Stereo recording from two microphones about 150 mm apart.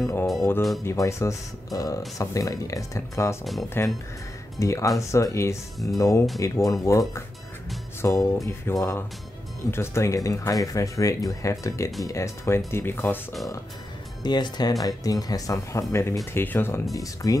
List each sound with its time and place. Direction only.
0.0 s speech: 20° left (ahead or behind)
14.2 s speech: 30° left (ahead or behind)